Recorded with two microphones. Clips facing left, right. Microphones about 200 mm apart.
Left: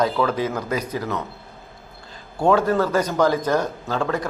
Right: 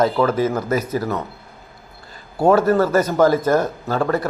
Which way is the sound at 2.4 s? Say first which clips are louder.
Right 3 dB; 5° right (ahead or behind).